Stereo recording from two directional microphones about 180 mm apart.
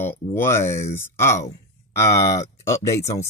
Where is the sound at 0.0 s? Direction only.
15° left (ahead or behind).